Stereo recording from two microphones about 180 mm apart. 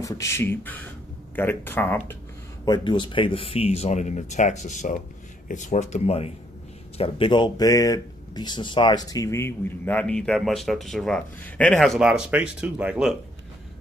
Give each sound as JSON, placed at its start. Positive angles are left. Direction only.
{"t": 0.0, "sound": "speech", "side_deg": 15}
{"t": 2.6, "sound": "speech", "side_deg": 25}